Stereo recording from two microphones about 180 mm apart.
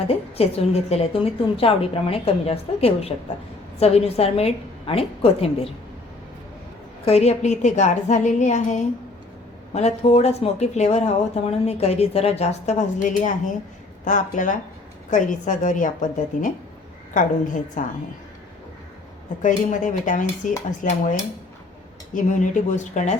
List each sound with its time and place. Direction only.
0.1 s speech: 35° left (ahead or behind)
7.0 s a woman's voice: 35° left (ahead or behind)
19.4 s a woman's voice: 45° left (ahead or behind)
22.1 s speech: 45° left (ahead or behind)